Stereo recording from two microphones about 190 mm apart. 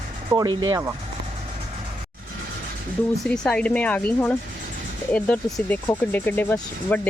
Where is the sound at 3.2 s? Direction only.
5° left (ahead or behind).